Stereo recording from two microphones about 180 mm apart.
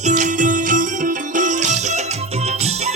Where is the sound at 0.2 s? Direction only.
45° right (ahead or behind).